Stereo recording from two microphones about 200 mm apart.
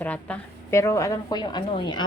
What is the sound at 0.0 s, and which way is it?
A woman's voice, 10° left (ahead or behind).